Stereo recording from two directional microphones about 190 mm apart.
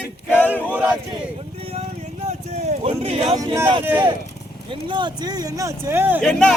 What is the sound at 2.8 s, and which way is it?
Speech, 35° right (ahead or behind).